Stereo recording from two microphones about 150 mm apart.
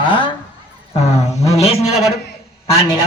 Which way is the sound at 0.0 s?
35° left (ahead or behind).